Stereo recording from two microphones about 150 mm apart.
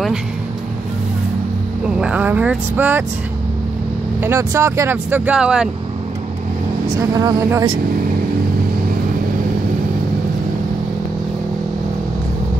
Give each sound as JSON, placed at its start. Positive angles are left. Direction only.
{"t": 2.0, "sound": "speech", "side_deg": -10}
{"t": 4.2, "sound": "speech", "side_deg": -15}
{"t": 7.0, "sound": "speech", "side_deg": -25}